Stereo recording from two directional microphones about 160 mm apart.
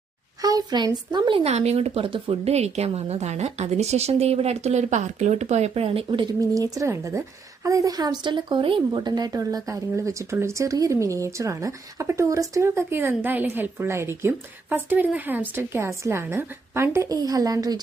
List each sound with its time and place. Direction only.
0.4 s speech: 25° right (ahead or behind)
1.5 s a woman's voice: 40° right (ahead or behind)
6.5 s a woman's voice: 20° right (ahead or behind)